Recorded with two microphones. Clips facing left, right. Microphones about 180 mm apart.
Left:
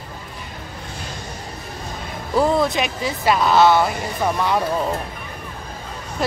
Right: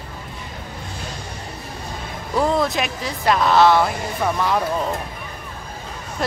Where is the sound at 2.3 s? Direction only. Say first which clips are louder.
Left 2 dB; centre (ahead or behind).